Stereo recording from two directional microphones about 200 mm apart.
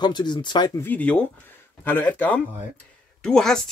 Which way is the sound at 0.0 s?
20° left (ahead or behind).